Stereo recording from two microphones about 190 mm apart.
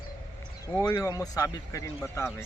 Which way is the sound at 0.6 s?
15° left (ahead or behind).